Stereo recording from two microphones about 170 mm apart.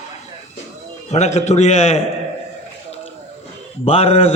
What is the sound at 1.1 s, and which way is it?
Speech, 40° left (ahead or behind).